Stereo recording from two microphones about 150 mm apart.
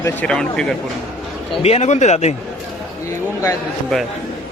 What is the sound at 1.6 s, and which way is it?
Speech, 45° left (ahead or behind).